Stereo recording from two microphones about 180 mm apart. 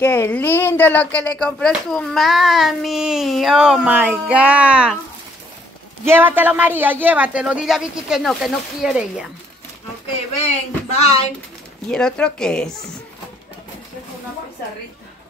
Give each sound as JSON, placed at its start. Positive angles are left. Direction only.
{"t": 0.0, "sound": "speech", "side_deg": 10}
{"t": 6.0, "sound": "speech", "side_deg": -10}
{"t": 10.4, "sound": "speech", "side_deg": 35}
{"t": 11.9, "sound": "speech", "side_deg": 5}